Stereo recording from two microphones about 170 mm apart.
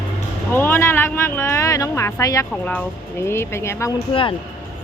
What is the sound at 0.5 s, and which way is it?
Speech, 15° left (ahead or behind).